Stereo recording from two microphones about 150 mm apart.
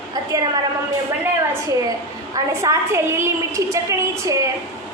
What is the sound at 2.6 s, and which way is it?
A woman's voice, 20° right (ahead or behind).